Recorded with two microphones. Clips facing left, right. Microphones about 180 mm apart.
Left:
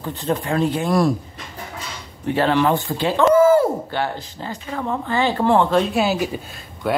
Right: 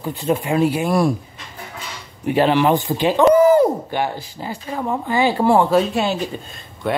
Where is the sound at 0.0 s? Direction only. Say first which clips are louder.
Right 2 dB; 10° right (ahead or behind).